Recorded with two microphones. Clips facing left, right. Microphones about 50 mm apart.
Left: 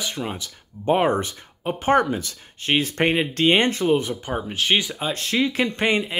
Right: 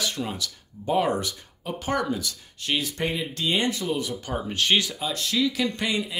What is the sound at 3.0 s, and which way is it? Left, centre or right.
Speech, left.